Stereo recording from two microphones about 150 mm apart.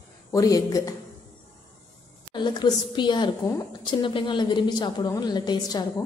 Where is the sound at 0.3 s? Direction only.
25° left (ahead or behind).